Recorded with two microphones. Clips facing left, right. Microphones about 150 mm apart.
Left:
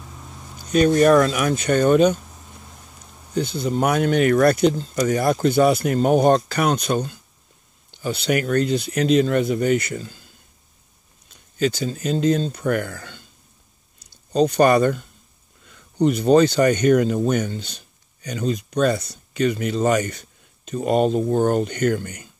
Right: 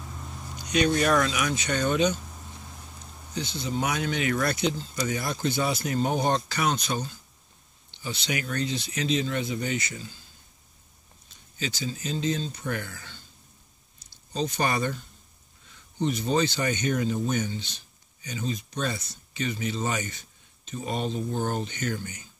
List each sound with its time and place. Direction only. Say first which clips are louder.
0.0 s a sound: even; centre (ahead or behind)
0.7 s speech: left 8 dB; 45° left (ahead or behind)
3.3 s speech: left 8 dB; 55° left (ahead or behind)
11.5 s speech: left 11 dB; 55° left (ahead or behind)
14.3 s speech: left 12 dB; 60° left (ahead or behind)